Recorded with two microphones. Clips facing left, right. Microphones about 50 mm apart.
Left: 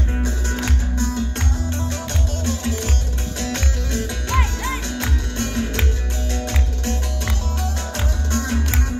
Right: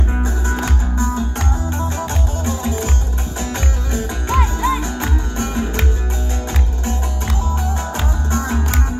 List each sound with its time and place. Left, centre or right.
0.2 s music: right
2.4 s music: right
8.3 s music: right